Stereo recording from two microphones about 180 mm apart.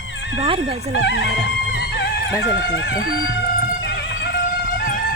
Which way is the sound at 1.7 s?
85° left.